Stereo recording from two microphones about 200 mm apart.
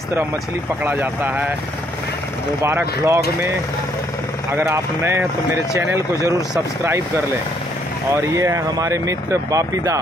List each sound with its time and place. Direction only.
0.8 s speech: 10° right (ahead or behind)
2.6 s speech: 10° right (ahead or behind)
4.6 s speech: 15° right (ahead or behind)